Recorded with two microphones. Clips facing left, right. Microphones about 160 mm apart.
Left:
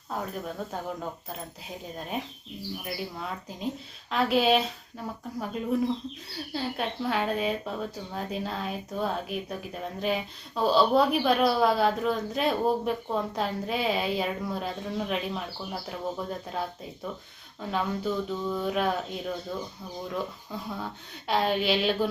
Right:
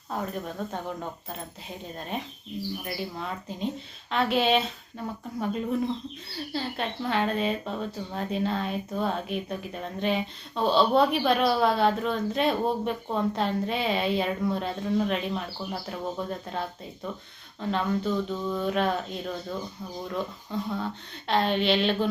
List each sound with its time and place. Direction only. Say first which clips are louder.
0.1 s speech: right 1 dB; centre (ahead or behind)